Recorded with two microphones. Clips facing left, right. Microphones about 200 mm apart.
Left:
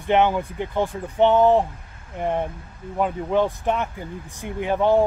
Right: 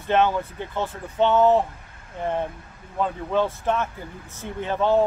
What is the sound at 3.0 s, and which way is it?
Speech, 15° left (ahead or behind).